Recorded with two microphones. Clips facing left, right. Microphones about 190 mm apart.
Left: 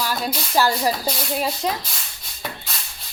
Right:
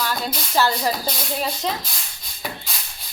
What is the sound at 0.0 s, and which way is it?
Speech, 10° left (ahead or behind).